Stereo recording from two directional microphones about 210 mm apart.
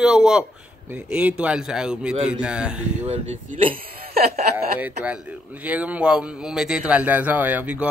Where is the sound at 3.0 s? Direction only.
35° right (ahead or behind).